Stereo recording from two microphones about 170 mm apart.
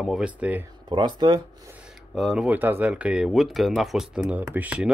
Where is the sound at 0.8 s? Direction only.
25° right (ahead or behind).